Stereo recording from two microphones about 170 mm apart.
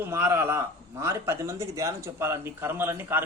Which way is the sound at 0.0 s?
15° right (ahead or behind).